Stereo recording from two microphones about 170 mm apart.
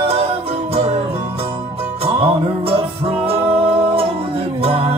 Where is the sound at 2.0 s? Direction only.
35° right (ahead or behind).